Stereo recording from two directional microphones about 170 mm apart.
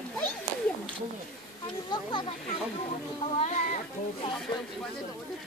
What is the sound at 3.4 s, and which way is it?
Speech, 45° left (ahead or behind).